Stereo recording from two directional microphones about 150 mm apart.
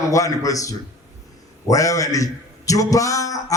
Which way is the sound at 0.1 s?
20° left (ahead or behind).